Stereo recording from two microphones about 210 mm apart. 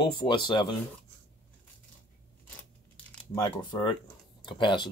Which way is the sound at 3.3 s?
20° left (ahead or behind).